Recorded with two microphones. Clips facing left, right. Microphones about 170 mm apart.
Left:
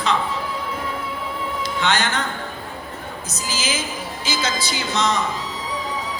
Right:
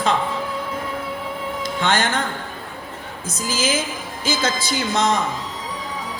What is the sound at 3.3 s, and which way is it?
A man's voice, 50° right (ahead or behind).